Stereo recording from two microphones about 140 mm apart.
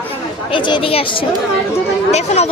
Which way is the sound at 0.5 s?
35° left (ahead or behind).